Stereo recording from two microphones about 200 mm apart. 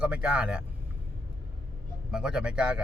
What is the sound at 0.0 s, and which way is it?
Speech, 5° right (ahead or behind).